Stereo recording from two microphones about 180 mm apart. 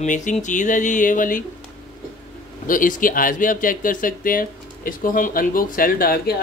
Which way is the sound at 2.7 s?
50° left (ahead or behind).